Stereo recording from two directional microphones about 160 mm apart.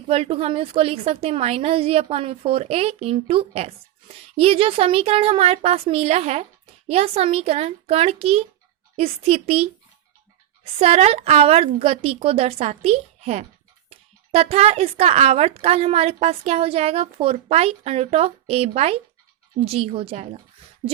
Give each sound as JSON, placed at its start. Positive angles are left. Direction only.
{"t": 0.1, "sound": "a woman's voice", "side_deg": -35}